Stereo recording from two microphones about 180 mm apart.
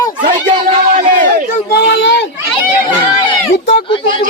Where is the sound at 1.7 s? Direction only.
75° left (ahead or behind).